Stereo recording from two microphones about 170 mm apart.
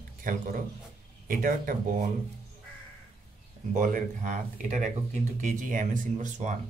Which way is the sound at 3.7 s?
50° right (ahead or behind).